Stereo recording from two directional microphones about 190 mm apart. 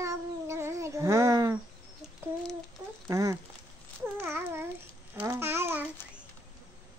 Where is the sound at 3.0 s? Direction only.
15° right (ahead or behind).